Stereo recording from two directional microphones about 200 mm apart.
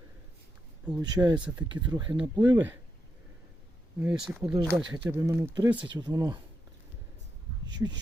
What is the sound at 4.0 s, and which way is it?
Speech, 5° right (ahead or behind).